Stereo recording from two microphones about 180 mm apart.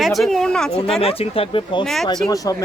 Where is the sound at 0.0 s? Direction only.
Centre (ahead or behind).